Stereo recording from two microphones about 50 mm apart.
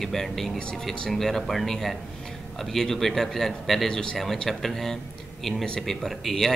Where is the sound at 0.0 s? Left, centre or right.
Centre.